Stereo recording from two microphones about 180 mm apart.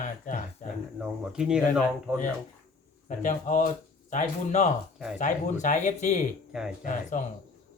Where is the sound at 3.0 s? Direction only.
45° left (ahead or behind).